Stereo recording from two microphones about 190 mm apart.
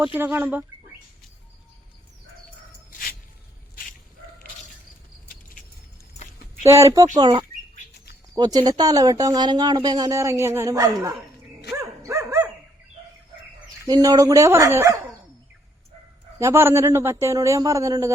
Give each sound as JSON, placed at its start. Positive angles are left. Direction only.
{"t": 0.0, "sound": "speech", "side_deg": -10}
{"t": 6.6, "sound": "speech", "side_deg": -15}
{"t": 11.7, "sound": "dog", "side_deg": -15}
{"t": 13.8, "sound": "speech", "side_deg": -20}
{"t": 16.4, "sound": "speech", "side_deg": -15}